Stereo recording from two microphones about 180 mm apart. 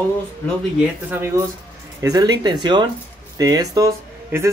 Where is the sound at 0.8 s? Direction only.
10° right (ahead or behind).